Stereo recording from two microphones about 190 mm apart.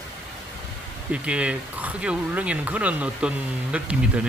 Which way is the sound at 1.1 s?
5° right (ahead or behind).